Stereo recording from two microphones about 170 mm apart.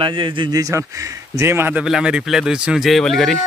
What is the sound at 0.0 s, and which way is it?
Speech, 30° right (ahead or behind).